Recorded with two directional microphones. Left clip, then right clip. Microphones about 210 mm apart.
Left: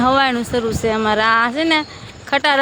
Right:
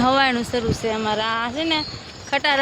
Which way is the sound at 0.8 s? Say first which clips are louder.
Left 6 dB; 30° left (ahead or behind).